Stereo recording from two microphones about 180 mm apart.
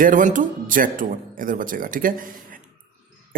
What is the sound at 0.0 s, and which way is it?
A man's voice, 45° right (ahead or behind).